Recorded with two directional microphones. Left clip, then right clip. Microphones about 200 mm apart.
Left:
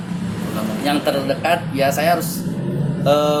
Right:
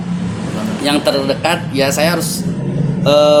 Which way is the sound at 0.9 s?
50° right (ahead or behind).